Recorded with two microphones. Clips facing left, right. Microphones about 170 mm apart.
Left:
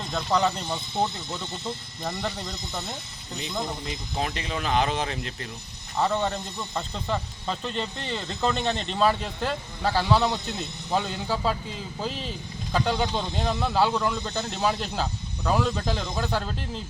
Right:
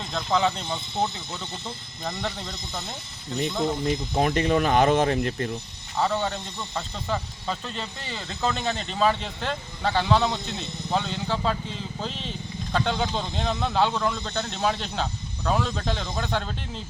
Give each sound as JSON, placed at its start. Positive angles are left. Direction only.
{"t": 0.1, "sound": "speech", "side_deg": 0}
{"t": 2.0, "sound": "speech", "side_deg": 0}
{"t": 3.8, "sound": "speech", "side_deg": -50}
{"t": 6.0, "sound": "speech", "side_deg": 5}